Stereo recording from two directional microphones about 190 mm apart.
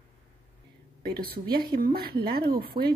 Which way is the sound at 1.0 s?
55° right (ahead or behind).